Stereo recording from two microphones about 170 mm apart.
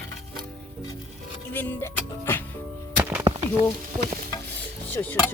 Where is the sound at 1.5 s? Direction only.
10° left (ahead or behind).